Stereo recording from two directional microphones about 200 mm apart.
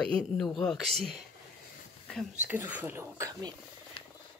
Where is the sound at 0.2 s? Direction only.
Centre (ahead or behind).